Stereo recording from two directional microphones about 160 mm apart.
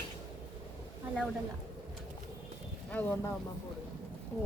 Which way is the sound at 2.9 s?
10° left (ahead or behind).